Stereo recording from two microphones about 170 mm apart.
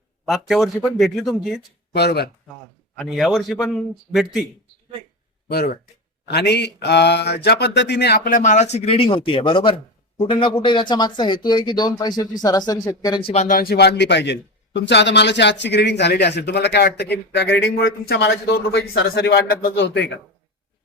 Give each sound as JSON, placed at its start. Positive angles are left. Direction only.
{"t": 0.3, "sound": "a man's voice", "side_deg": 0}
{"t": 1.9, "sound": "speech", "side_deg": 75}
{"t": 2.9, "sound": "a man's voice", "side_deg": 0}
{"t": 5.5, "sound": "speech", "side_deg": 65}
{"t": 6.2, "sound": "a man's voice", "side_deg": 80}
{"t": 13.3, "sound": "a man's voice", "side_deg": 50}